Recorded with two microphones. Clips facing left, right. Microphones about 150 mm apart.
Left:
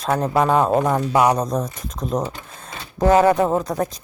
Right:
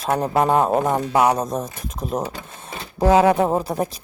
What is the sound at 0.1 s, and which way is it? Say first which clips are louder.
Speech: even; 20° right (ahead or behind).